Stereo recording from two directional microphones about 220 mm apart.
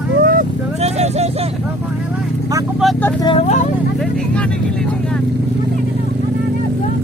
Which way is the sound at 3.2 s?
25° left (ahead or behind).